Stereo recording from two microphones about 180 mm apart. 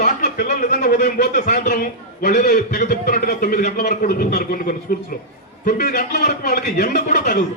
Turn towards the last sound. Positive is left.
turn(degrees=50)  # may be behind; listen again after turning